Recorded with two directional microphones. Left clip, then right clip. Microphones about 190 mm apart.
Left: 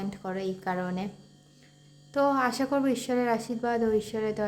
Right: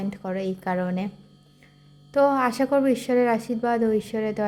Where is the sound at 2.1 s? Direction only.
15° right (ahead or behind).